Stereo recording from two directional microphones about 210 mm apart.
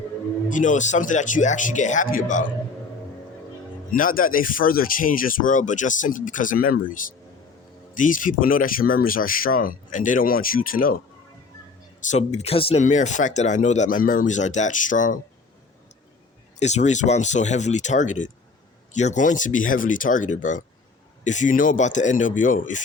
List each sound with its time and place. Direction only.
0.4 s speech: 35° left (ahead or behind)
3.9 s speech: 40° left (ahead or behind)
12.1 s speech: 30° left (ahead or behind)
16.6 s speech: 35° left (ahead or behind)